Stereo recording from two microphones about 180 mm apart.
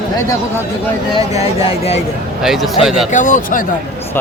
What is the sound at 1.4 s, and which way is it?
Speech, 35° left (ahead or behind).